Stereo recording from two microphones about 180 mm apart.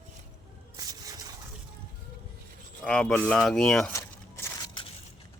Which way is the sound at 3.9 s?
15° left (ahead or behind).